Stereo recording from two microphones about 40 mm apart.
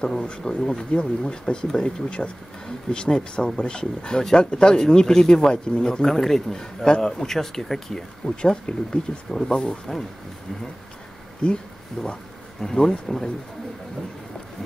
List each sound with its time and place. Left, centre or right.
0.0 s speech: centre
8.2 s speech: left
9.3 s speech: centre
11.4 s speech: left
12.0 s speech: centre
12.7 s speech: centre